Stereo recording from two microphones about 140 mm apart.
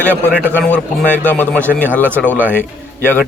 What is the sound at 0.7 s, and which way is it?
Speech, 10° left (ahead or behind).